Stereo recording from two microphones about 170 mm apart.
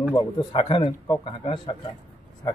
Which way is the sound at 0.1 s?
25° left (ahead or behind).